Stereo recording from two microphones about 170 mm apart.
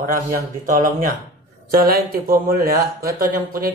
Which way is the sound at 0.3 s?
50° right (ahead or behind).